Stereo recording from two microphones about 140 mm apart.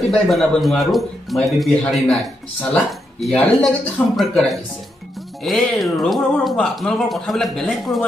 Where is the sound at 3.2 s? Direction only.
Centre (ahead or behind).